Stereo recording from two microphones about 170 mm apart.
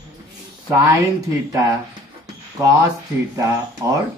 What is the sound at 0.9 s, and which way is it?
Speech, 20° right (ahead or behind).